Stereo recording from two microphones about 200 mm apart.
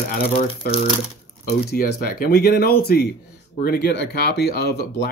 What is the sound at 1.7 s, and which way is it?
Speech, 50° left (ahead or behind).